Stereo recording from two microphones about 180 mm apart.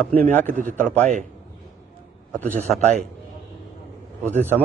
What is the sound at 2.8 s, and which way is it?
Speech, 35° right (ahead or behind).